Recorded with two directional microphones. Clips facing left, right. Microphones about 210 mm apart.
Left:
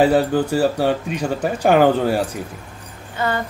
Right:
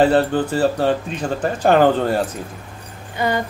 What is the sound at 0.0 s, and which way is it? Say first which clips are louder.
Speech: even; 10° left (ahead or behind).